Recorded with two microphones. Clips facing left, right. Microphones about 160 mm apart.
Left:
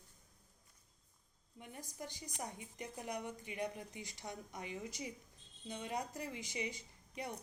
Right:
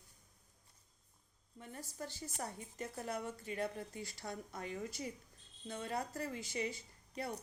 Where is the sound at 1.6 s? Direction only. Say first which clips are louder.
Right 2 dB; 15° left (ahead or behind).